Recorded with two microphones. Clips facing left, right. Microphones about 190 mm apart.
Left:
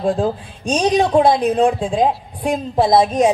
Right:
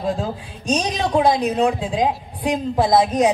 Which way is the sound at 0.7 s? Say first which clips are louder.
Left 7 dB; 50° left (ahead or behind).